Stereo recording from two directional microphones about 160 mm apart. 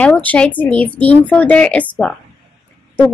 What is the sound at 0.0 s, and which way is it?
Speech, 10° left (ahead or behind).